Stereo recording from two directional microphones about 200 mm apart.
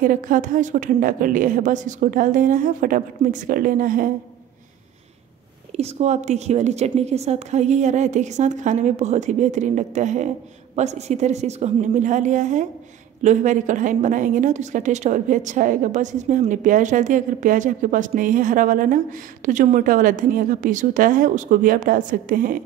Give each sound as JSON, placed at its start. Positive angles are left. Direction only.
{"t": 0.0, "sound": "a woman's voice", "side_deg": -40}
{"t": 5.8, "sound": "a woman's voice", "side_deg": -35}